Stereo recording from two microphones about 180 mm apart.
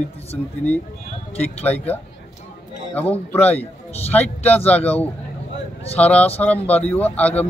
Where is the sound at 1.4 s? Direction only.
10° left (ahead or behind).